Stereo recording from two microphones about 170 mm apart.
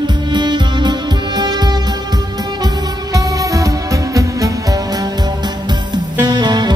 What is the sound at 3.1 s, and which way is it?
Music, 20° right (ahead or behind).